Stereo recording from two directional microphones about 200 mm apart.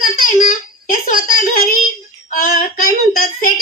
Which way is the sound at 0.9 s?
45° left (ahead or behind).